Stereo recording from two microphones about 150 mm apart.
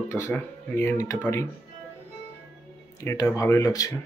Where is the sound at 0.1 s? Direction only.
15° left (ahead or behind).